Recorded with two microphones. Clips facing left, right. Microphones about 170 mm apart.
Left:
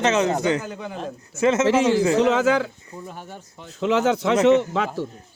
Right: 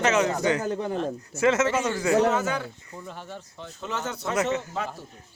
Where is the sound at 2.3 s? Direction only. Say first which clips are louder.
Left 7 dB; 90° left.